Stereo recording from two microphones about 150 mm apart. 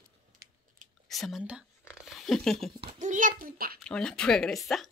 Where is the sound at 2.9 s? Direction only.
55° right (ahead or behind); by 3.8 s 75° right (ahead or behind).